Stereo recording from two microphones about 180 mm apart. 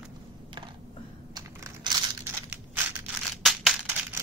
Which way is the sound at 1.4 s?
20° right (ahead or behind).